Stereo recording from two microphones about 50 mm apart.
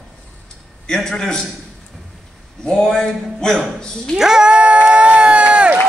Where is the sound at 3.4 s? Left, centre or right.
Centre.